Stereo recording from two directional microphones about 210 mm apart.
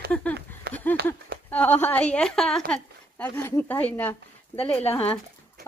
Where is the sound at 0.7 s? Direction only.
50° right (ahead or behind).